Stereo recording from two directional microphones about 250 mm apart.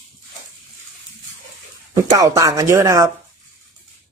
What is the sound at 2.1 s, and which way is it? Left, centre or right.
Speech, centre.